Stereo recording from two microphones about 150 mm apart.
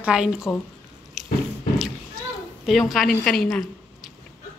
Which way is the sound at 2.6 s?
Centre (ahead or behind).